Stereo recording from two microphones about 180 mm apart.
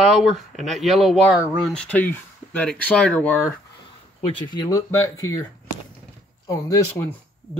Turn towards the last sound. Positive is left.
turn(degrees=15)  # may be behind; listen again after turning